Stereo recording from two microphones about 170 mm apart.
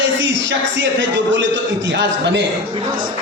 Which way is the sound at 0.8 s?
90° right.